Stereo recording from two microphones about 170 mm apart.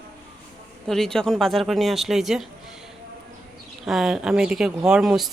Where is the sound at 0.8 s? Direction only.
Centre (ahead or behind).